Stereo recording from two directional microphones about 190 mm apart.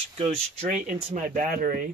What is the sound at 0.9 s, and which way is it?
Speech, 40° right (ahead or behind).